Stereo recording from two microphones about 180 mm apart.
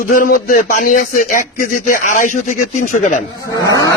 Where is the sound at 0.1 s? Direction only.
50° left (ahead or behind).